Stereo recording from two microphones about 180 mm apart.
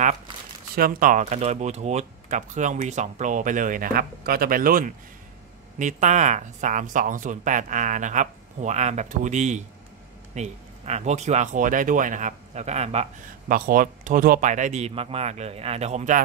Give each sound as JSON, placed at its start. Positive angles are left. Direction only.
{"t": 0.7, "sound": "speech", "side_deg": -55}
{"t": 13.5, "sound": "speech", "side_deg": -50}